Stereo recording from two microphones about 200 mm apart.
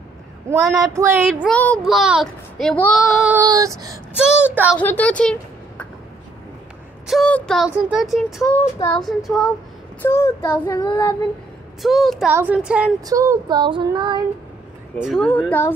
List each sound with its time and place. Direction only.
0.8 s child singing: 15° right (ahead or behind)
1.2 s child singing: centre (ahead or behind)
3.4 s child singing: 15° right (ahead or behind)
4.2 s child singing: 5° right (ahead or behind)
4.7 s a woman's voice: 5° left (ahead or behind)
7.1 s child singing: 5° left (ahead or behind)
8.7 s child singing: 15° left (ahead or behind)
9.0 s child singing: centre (ahead or behind)
10.0 s child singing: 15° left (ahead or behind)
11.8 s child singing: centre (ahead or behind)
13.0 s child singing: 15° right (ahead or behind)
15.0 s child singing: centre (ahead or behind)